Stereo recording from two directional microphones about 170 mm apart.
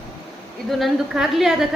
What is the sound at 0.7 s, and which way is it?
A woman's voice, centre (ahead or behind).